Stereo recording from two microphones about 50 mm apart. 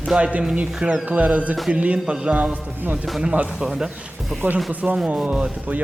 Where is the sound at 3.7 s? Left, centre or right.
Centre.